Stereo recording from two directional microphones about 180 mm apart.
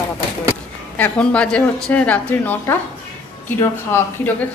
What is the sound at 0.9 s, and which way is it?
A woman's voice, 10° left (ahead or behind).